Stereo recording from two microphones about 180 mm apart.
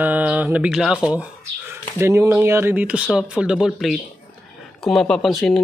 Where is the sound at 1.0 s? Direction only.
5° right (ahead or behind).